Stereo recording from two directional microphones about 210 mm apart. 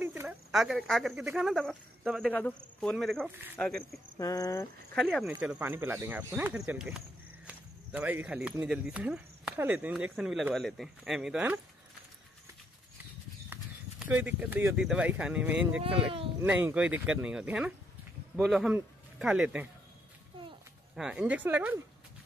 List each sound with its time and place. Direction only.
0.0 s speech: 10° right (ahead or behind)
4.2 s speech: 15° left (ahead or behind)
4.9 s speech: centre (ahead or behind)
13.5 s speech: 10° right (ahead or behind)
15.8 s speech: 25° right (ahead or behind)
16.3 s speech: 10° right (ahead or behind)
20.9 s speech: 5° right (ahead or behind)